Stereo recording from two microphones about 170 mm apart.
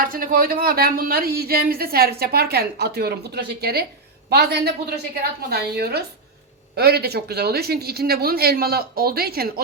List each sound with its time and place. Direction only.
0.0 s a woman's voice: 55° right (ahead or behind)